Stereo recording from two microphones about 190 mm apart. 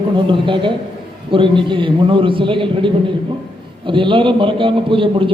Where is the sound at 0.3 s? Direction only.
25° right (ahead or behind).